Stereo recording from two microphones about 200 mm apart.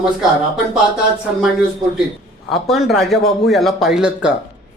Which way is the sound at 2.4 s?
Centre (ahead or behind).